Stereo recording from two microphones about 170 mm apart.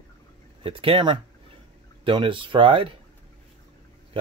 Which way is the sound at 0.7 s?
35° right (ahead or behind).